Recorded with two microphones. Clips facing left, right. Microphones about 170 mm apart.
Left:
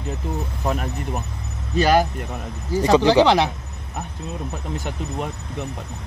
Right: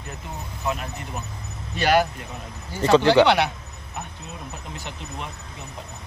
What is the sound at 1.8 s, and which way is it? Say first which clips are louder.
Speech: left 3 dB; 40° left (ahead or behind).